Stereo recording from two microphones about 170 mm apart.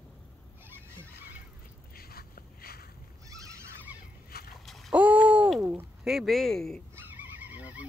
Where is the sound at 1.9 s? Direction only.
60° left (ahead or behind).